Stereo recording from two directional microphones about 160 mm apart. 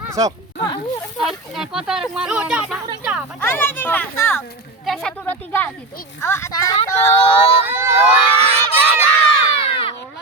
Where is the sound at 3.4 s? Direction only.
15° left (ahead or behind).